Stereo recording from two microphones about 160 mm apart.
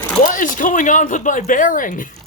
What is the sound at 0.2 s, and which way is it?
Speech, 55° left (ahead or behind).